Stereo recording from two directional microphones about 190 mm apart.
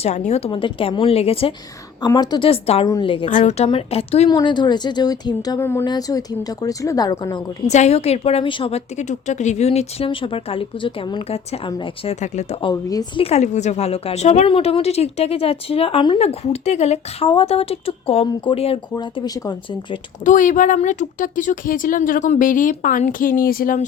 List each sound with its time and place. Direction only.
0.0 s a woman's voice: 35° left (ahead or behind)
3.2 s a woman's voice: 40° left (ahead or behind); by 7.4 s 20° left (ahead or behind)
7.7 s a woman's voice: 35° left (ahead or behind)
12.6 s a woman's voice: 20° left (ahead or behind)
13.2 s a woman's voice: 35° left (ahead or behind)
20.2 s speech: 45° left (ahead or behind)